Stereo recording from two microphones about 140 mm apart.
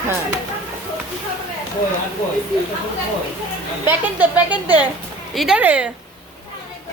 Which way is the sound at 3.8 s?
10° right (ahead or behind).